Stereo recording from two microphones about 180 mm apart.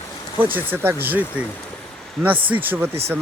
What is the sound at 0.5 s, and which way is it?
Speech, 10° right (ahead or behind).